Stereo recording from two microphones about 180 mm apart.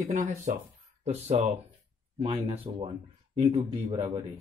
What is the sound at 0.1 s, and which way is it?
Speech, 50° right (ahead or behind).